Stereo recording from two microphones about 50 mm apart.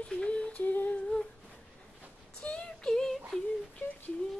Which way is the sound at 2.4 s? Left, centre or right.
Left.